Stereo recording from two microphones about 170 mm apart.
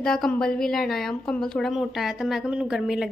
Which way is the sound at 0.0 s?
5° left (ahead or behind).